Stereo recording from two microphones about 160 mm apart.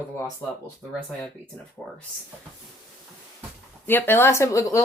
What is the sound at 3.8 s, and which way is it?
Speech, 15° left (ahead or behind).